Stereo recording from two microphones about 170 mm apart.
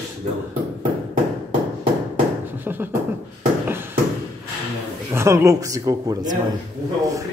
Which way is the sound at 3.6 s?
15° right (ahead or behind).